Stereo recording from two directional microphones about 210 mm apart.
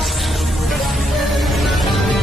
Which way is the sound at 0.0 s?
Centre (ahead or behind).